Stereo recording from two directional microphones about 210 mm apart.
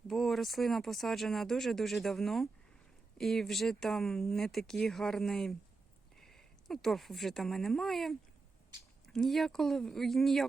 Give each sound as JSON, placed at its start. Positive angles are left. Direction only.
{"t": 0.1, "sound": "a woman's voice", "side_deg": 0}
{"t": 9.1, "sound": "speech", "side_deg": 0}